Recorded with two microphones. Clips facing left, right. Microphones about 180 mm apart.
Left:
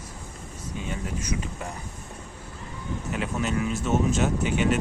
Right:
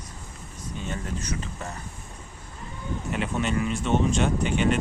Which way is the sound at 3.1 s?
Centre (ahead or behind).